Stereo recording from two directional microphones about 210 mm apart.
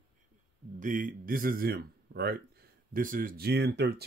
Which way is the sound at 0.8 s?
40° right (ahead or behind).